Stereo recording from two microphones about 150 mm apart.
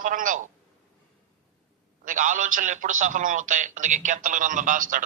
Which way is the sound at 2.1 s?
60° right (ahead or behind).